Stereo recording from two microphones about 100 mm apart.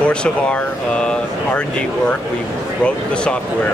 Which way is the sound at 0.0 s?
10° left (ahead or behind).